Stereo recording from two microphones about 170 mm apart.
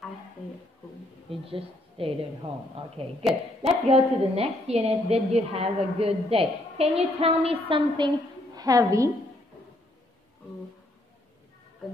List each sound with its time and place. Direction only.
1.4 s a woman's voice: 35° right (ahead or behind)
3.6 s a woman's voice: 35° right (ahead or behind)
8.5 s a woman's voice: 20° right (ahead or behind)